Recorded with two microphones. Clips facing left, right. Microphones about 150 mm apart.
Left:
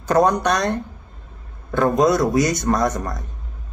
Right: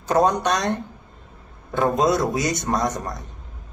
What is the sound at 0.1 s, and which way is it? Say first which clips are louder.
Speech: left 2 dB; 20° right (ahead or behind).